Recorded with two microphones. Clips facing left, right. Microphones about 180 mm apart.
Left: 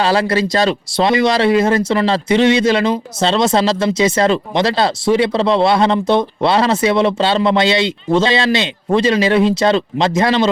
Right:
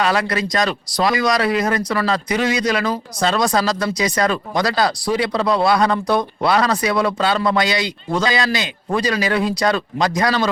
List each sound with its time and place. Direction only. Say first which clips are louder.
0.0 s speech: left 4 dB; 30° left (ahead or behind)